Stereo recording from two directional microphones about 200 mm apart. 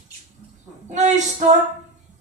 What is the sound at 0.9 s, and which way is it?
Female singing, 35° right (ahead or behind).